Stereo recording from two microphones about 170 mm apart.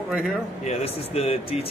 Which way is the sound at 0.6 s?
35° left (ahead or behind).